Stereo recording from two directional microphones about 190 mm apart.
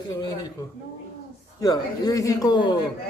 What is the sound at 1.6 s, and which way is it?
Speech, 20° left (ahead or behind).